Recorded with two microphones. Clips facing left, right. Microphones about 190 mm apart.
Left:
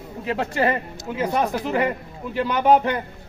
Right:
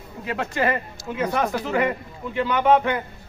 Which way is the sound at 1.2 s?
15° left (ahead or behind).